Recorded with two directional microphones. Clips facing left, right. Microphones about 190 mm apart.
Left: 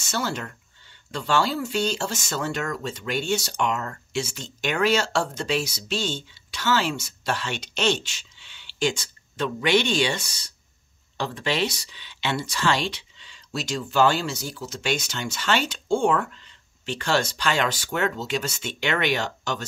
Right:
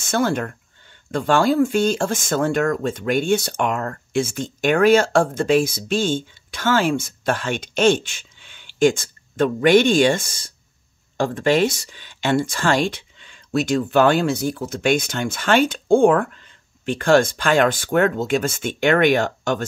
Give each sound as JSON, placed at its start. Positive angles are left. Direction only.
{"t": 0.0, "sound": "speech", "side_deg": -55}